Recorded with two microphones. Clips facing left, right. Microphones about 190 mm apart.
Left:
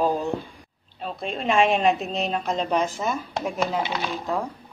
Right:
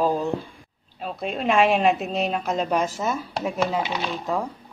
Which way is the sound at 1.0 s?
5° right (ahead or behind).